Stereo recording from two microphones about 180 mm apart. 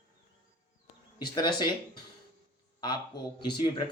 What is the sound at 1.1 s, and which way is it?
Speech, 25° left (ahead or behind).